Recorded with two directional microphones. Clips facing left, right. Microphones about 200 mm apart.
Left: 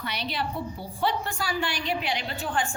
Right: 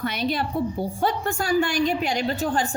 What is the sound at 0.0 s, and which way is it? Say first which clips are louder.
A woman's voice: right 6 dB; 45° right (ahead or behind).